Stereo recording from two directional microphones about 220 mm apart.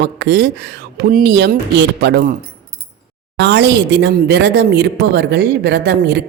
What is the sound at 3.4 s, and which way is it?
A woman's voice, 50° right (ahead or behind).